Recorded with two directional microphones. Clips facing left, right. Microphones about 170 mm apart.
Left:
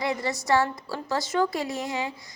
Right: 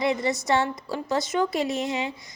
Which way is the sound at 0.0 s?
20° right (ahead or behind).